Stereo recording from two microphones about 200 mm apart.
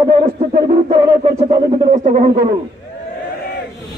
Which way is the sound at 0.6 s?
25° right (ahead or behind).